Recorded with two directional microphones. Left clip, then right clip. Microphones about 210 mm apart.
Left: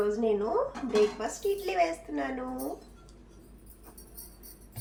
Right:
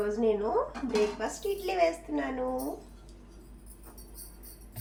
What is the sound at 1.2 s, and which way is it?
A woman's voice, 15° left (ahead or behind).